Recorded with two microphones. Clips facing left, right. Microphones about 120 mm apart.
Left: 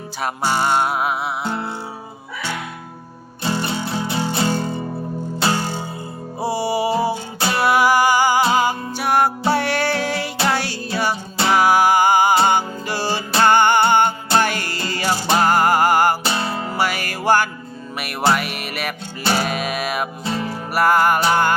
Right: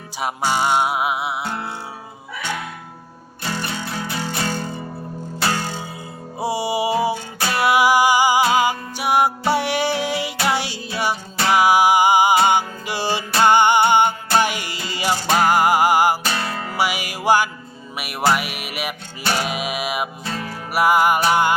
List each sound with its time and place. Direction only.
0.2 s music: 10° right (ahead or behind)
3.4 s music: 25° left (ahead or behind)
6.4 s music: 15° right (ahead or behind)
7.3 s music: 25° left (ahead or behind)
7.6 s music: 15° right (ahead or behind)
16.2 s music: 25° left (ahead or behind)
16.7 s music: 10° right (ahead or behind)
20.2 s music: 25° left (ahead or behind)
20.7 s music: 10° right (ahead or behind)